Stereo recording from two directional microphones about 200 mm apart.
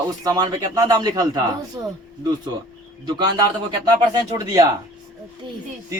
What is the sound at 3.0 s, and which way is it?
Speech, 20° right (ahead or behind).